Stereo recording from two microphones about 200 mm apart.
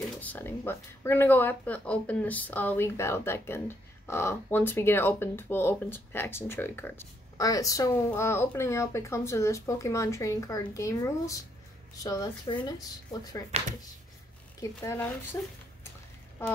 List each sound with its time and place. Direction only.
0.2 s speech: 10° left (ahead or behind)
14.6 s speech: 10° left (ahead or behind)